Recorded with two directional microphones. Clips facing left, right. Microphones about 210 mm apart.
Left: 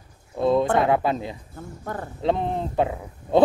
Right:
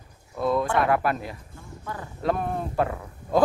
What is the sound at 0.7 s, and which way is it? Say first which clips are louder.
Speech: left 2 dB; 20° left (ahead or behind).